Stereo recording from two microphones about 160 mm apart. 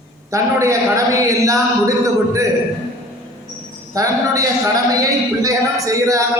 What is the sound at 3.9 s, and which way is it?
A man's voice, 20° right (ahead or behind).